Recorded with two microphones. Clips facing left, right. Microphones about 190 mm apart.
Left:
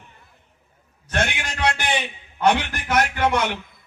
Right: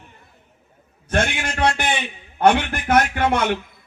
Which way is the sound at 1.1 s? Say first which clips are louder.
Right 3 dB; 55° right (ahead or behind).